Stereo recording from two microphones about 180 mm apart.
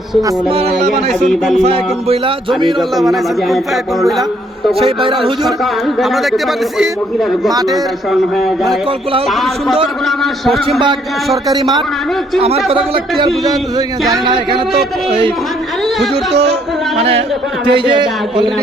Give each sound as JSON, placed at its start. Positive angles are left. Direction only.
{"t": 1.6, "sound": "speech", "side_deg": -35}
{"t": 2.9, "sound": "a man's voice", "side_deg": 0}
{"t": 4.8, "sound": "speech", "side_deg": -30}
{"t": 6.0, "sound": "a man's voice", "side_deg": 0}
{"t": 10.1, "sound": "a man's voice", "side_deg": 0}
{"t": 11.4, "sound": "speech", "side_deg": -20}
{"t": 17.0, "sound": "speech", "side_deg": -35}